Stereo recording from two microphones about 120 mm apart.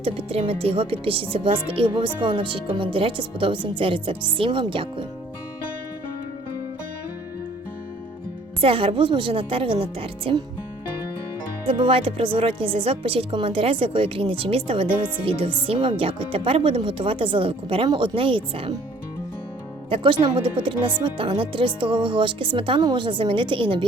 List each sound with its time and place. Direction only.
0.0 s speech: 50° right (ahead or behind)
8.6 s speech: 50° right (ahead or behind)
11.6 s speech: 50° right (ahead or behind)
19.9 s speech: 45° right (ahead or behind)